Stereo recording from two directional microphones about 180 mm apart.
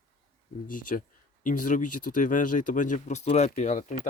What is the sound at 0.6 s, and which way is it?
Speech, 50° left (ahead or behind).